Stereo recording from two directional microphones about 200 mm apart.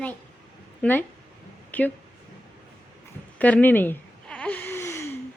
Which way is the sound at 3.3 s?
5° left (ahead or behind).